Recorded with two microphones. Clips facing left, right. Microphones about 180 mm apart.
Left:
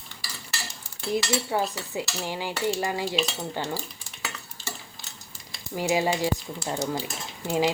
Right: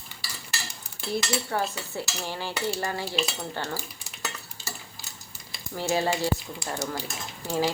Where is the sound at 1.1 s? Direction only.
15° left (ahead or behind).